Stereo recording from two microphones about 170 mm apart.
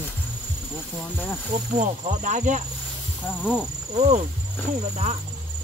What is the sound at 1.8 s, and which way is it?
Speech, 45° right (ahead or behind).